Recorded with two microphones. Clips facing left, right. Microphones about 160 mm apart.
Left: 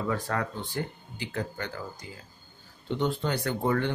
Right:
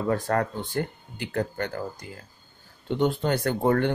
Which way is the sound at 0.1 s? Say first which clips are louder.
Right 5 dB; 50° right (ahead or behind).